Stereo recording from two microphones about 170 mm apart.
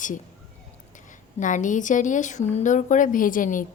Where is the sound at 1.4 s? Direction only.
50° left (ahead or behind).